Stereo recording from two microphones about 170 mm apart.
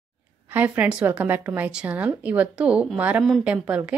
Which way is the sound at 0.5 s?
10° right (ahead or behind).